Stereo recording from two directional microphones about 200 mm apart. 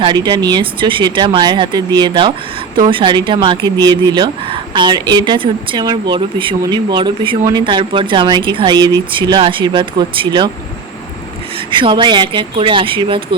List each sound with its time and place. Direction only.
0.0 s speech: 20° right (ahead or behind)
11.7 s speech: 25° right (ahead or behind)